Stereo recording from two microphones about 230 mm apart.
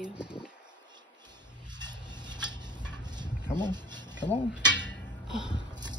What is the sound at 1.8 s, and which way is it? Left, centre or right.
Dishes, centre.